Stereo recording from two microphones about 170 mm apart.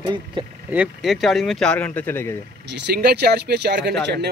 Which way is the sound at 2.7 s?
85° right.